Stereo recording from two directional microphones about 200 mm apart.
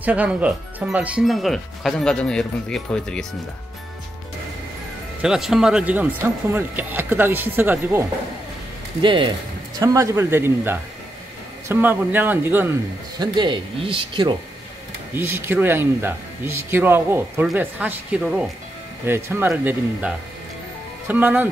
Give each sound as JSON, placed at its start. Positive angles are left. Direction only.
{"t": 0.0, "sound": "speech", "side_deg": -5}
{"t": 5.2, "sound": "a man's voice", "side_deg": -5}
{"t": 9.0, "sound": "a man's voice", "side_deg": -25}
{"t": 13.2, "sound": "speech", "side_deg": -25}
{"t": 15.1, "sound": "a man's voice", "side_deg": -10}